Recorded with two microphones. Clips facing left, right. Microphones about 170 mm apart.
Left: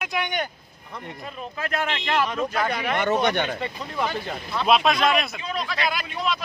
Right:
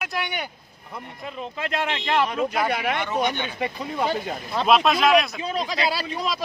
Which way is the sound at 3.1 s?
70° left (ahead or behind).